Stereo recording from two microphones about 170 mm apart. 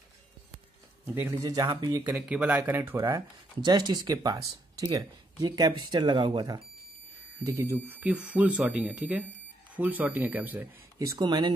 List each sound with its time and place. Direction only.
1.0 s speech: 10° right (ahead or behind)
2.0 s speech: 5° right (ahead or behind)
11.0 s speech: 25° right (ahead or behind)